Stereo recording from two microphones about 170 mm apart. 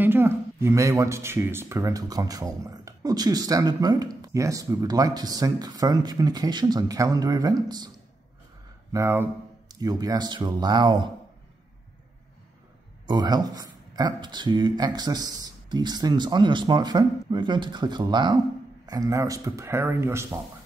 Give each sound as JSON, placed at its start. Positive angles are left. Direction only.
{"t": 0.0, "sound": "speech", "side_deg": -15}
{"t": 8.9, "sound": "speech", "side_deg": -15}
{"t": 13.0, "sound": "speech", "side_deg": -25}